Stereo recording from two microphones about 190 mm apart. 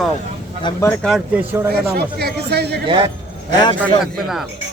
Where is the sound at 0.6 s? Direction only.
25° left (ahead or behind).